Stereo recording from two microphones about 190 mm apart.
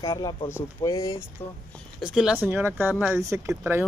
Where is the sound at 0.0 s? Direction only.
20° left (ahead or behind).